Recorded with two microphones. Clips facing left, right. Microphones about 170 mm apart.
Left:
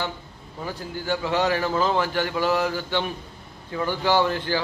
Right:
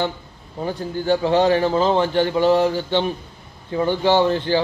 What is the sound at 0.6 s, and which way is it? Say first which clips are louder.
A man's voice: right 7 dB; 30° right (ahead or behind).